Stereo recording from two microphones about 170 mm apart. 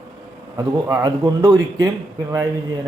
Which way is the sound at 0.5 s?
15° right (ahead or behind).